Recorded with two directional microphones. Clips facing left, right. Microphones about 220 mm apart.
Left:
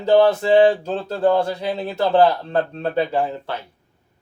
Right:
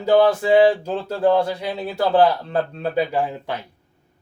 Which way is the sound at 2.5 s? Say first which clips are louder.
Left 1 dB; 10° right (ahead or behind).